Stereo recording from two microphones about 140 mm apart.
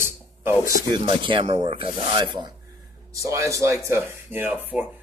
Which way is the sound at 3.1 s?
20° right (ahead or behind).